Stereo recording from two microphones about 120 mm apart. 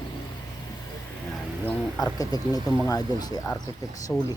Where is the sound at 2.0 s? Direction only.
30° left (ahead or behind).